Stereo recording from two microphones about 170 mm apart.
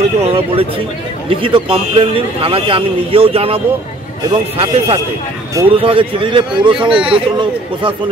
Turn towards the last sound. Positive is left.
turn(degrees=-30)  # may be behind; listen again after turning